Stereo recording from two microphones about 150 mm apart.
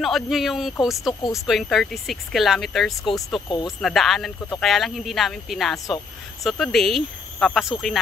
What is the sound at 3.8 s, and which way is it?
Speech, centre (ahead or behind).